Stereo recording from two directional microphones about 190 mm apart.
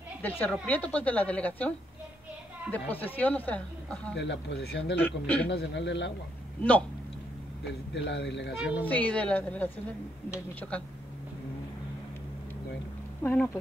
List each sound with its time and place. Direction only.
0.2 s speech: 10° left (ahead or behind)
2.7 s speech: 10° left (ahead or behind)
4.2 s speech: 70° left (ahead or behind)
5.0 s a man's voice: 5° left (ahead or behind)
5.5 s speech: 65° left (ahead or behind)
7.9 s speech: 65° left (ahead or behind)
8.5 s a man's voice: 5° right (ahead or behind)
8.8 s speech: 10° left (ahead or behind)
13.2 s speech: 10° left (ahead or behind)